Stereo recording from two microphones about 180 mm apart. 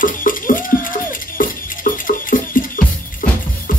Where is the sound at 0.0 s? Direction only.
50° left (ahead or behind).